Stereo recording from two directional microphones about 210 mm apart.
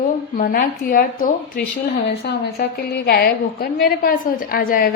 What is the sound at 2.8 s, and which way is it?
A woman's voice, 50° left (ahead or behind).